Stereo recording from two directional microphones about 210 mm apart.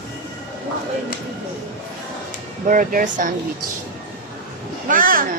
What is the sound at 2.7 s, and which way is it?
Speech, 40° right (ahead or behind).